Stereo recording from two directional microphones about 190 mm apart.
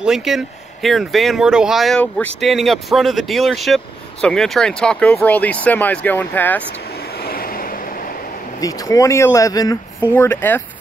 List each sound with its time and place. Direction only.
0.0 s speech: centre (ahead or behind)
7.2 s vehicle: 50° left (ahead or behind)
8.5 s speech: 20° left (ahead or behind)